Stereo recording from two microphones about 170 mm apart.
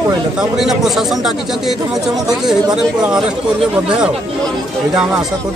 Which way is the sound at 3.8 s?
5° right (ahead or behind).